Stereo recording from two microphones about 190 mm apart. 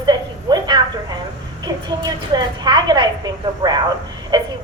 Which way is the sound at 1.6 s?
20° right (ahead or behind).